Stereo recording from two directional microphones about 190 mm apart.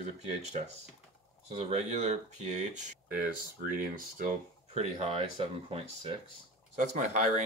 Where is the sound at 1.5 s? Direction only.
35° right (ahead or behind).